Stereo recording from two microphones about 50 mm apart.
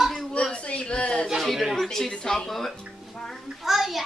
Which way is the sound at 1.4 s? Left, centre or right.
Centre.